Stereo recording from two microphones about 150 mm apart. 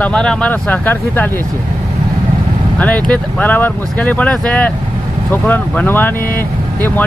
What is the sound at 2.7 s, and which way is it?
Speech, 10° left (ahead or behind).